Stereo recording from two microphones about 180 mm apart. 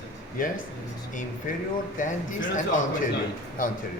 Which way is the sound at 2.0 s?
45° left (ahead or behind).